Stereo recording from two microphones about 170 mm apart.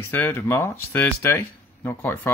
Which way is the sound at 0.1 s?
10° left (ahead or behind).